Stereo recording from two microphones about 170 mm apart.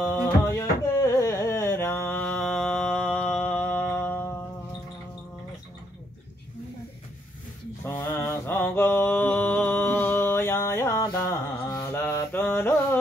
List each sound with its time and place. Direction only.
0.0 s music: 10° left (ahead or behind)
7.8 s mantra: 15° left (ahead or behind)